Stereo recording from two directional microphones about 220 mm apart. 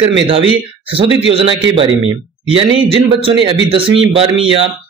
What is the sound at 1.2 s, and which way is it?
A man's voice, 25° right (ahead or behind).